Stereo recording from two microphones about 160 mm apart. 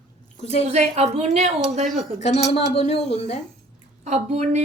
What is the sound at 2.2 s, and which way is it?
Speech, 40° left (ahead or behind).